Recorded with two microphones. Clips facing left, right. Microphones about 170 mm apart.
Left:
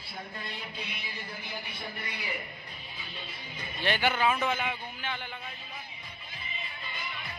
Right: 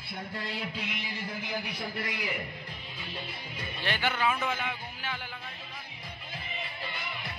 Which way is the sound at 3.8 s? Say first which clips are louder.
Left 3 dB; 20° left (ahead or behind).